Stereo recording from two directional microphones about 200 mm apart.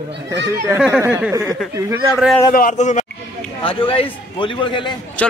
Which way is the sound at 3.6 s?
25° left (ahead or behind).